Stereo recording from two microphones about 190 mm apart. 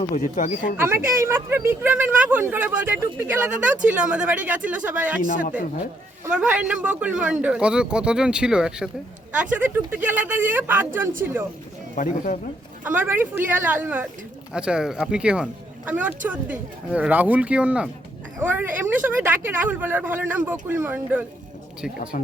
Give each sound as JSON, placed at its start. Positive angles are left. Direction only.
{"t": 0.1, "sound": "speech", "side_deg": 45}
{"t": 0.8, "sound": "a woman's voice", "side_deg": -15}
{"t": 6.2, "sound": "a man's voice", "side_deg": -5}
{"t": 11.9, "sound": "speech", "side_deg": 45}
{"t": 12.8, "sound": "a woman's voice", "side_deg": -10}
{"t": 22.1, "sound": "speech", "side_deg": 45}